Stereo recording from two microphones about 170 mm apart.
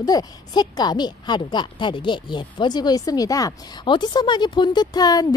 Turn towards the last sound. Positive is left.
turn(degrees=20)  # may be behind; listen again after turning